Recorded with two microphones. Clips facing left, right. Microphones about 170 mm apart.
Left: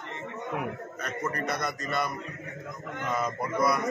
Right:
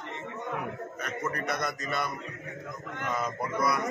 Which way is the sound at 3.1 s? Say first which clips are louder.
Left 2 dB; centre (ahead or behind).